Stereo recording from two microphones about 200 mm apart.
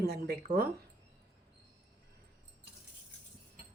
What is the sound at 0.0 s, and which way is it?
Speech, 50° right (ahead or behind).